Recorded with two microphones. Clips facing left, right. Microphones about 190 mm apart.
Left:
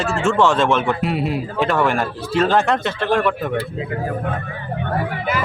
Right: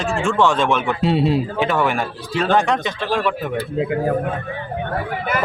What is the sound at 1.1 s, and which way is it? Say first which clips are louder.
Speech: right 4 dB; 30° right (ahead or behind).